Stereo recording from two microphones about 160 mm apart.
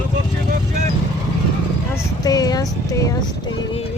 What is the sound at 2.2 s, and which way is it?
Speech, 25° left (ahead or behind).